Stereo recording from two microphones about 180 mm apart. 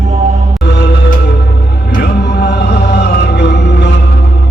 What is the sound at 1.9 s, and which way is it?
Music, 65° left (ahead or behind).